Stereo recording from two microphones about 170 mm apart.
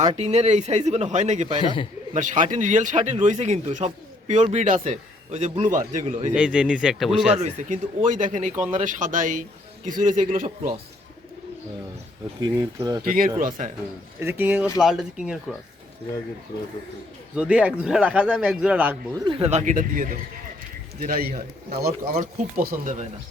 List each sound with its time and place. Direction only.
0.0 s speech: 40° right (ahead or behind)
6.3 s speech: 5° right (ahead or behind)
7.3 s speech: 45° right (ahead or behind)
12.4 s speech: 20° right (ahead or behind)
13.1 s a man's voice: 55° right (ahead or behind)
13.3 s speech: 45° right (ahead or behind)
14.2 s speech: 10° right (ahead or behind)
17.3 s speech: 5° right (ahead or behind)
19.2 s a man's voice: 35° right (ahead or behind); by 22.7 s 60° right (ahead or behind)